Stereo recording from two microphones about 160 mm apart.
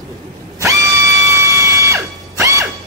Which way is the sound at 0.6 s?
20° right (ahead or behind).